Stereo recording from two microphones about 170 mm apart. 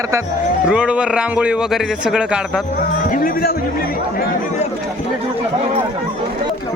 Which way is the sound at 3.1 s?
55° left (ahead or behind).